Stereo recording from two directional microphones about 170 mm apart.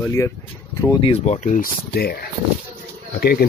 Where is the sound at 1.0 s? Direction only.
35° left (ahead or behind); by 3.5 s 65° left (ahead or behind).